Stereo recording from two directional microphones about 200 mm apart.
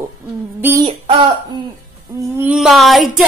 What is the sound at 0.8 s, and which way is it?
Speech, 25° right (ahead or behind).